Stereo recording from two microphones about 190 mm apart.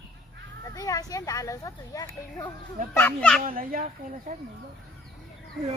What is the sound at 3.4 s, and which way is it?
Speech, 45° right (ahead or behind).